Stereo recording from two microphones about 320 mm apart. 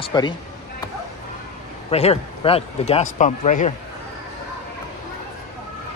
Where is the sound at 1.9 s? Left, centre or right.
Centre.